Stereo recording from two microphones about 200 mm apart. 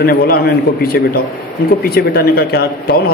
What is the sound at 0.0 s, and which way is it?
Speech, 50° left (ahead or behind).